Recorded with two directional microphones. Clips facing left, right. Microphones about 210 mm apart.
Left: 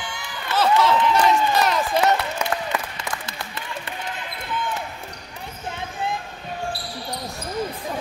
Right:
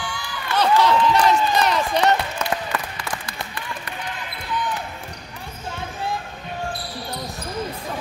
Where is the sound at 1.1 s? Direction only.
Centre (ahead or behind).